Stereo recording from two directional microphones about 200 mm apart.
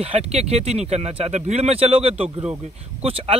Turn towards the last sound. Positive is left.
turn(degrees=-30)  # may be behind; listen again after turning